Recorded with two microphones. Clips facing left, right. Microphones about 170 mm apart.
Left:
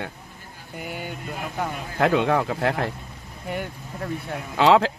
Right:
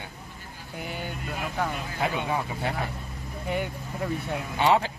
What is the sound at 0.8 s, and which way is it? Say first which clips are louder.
Speech: left 2 dB; 5° left (ahead or behind).